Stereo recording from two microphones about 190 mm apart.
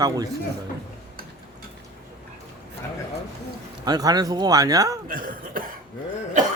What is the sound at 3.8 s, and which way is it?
Speech, 20° right (ahead or behind).